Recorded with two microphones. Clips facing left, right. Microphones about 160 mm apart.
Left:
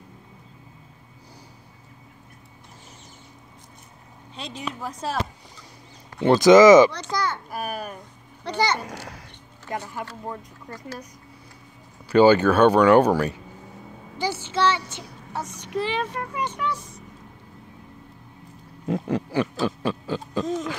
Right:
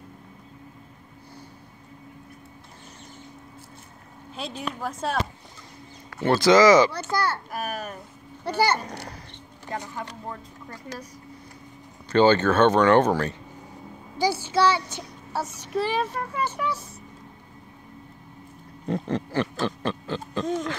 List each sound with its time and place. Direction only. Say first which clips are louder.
4.4 s speech: right 1 dB; centre (ahead or behind)
6.2 s speech: left 4 dB; 20° left (ahead or behind)
6.9 s a child's voice: right 1 dB; 5° right (ahead or behind)
8.5 s a child's voice: right 1 dB; 10° right (ahead or behind)
8.7 s speech: even; 5° left (ahead or behind)
12.1 s speech: left 3 dB; 10° left (ahead or behind)
14.1 s a child's voice: right 3 dB; 10° right (ahead or behind)
18.9 s pig: left 2 dB; 10° left (ahead or behind)
20.2 s speech: left 1 dB; centre (ahead or behind)